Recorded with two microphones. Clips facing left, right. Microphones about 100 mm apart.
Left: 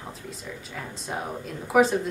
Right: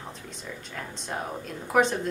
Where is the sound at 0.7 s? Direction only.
5° left (ahead or behind).